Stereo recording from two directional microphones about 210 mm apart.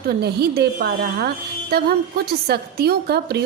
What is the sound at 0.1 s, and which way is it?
A woman's voice, 50° right (ahead or behind).